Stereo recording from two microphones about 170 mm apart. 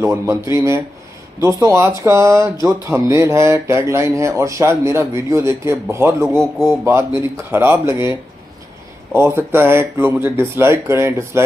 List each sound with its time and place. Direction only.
0.0 s speech: 15° right (ahead or behind)
6.2 s speech: centre (ahead or behind)
6.8 s speech: 15° right (ahead or behind)